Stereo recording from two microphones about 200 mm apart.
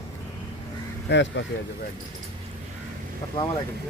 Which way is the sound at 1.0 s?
65° left (ahead or behind).